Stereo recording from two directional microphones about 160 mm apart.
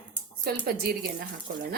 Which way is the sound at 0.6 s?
70° right (ahead or behind).